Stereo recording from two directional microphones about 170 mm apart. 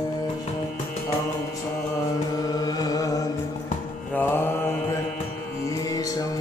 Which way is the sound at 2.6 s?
20° left (ahead or behind).